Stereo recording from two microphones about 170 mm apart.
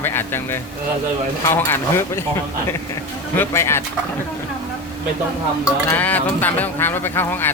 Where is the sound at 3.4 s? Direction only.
15° left (ahead or behind).